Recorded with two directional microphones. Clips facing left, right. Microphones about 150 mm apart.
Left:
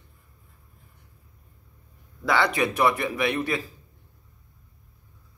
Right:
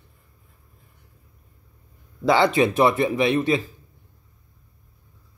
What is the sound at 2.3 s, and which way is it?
Speech, 25° right (ahead or behind).